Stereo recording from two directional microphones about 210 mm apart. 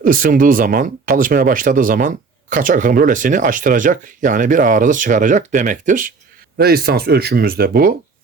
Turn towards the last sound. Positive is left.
turn(degrees=-45)  # may be behind; listen again after turning